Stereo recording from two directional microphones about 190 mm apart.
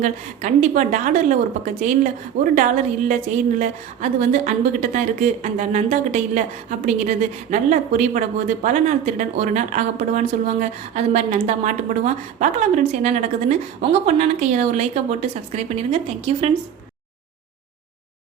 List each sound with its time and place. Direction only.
0.0 s a woman's voice: 40° right (ahead or behind)